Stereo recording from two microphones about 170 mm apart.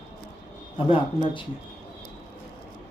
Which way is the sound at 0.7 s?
30° left (ahead or behind).